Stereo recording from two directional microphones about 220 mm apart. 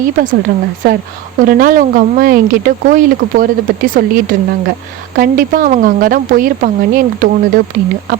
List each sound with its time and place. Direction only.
1.4 s speech: 40° right (ahead or behind)